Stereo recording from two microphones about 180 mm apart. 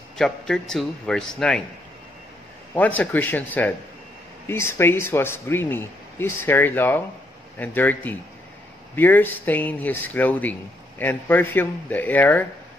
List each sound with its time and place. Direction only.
0.2 s a man's voice: 5° left (ahead or behind)
2.7 s speech: 10° left (ahead or behind)